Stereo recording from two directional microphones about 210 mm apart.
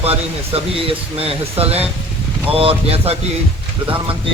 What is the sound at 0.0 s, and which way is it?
Speech, 30° right (ahead or behind).